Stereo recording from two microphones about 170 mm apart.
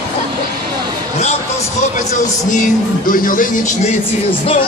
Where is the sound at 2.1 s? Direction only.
45° left (ahead or behind).